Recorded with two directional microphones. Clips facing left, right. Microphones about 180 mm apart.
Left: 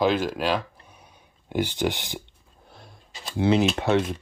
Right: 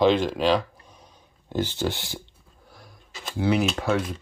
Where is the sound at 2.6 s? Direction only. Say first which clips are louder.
Left 1 dB; 25° left (ahead or behind).